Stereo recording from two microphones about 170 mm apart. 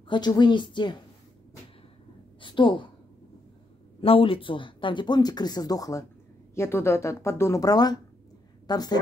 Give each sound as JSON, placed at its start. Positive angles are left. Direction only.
{"t": 0.1, "sound": "speech", "side_deg": 25}
{"t": 2.4, "sound": "a woman's voice", "side_deg": 30}
{"t": 4.0, "sound": "a woman's voice", "side_deg": 35}